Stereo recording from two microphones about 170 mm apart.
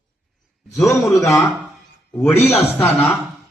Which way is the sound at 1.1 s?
20° left (ahead or behind).